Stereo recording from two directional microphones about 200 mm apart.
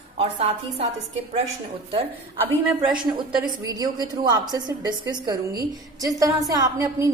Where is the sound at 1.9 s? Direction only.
25° right (ahead or behind).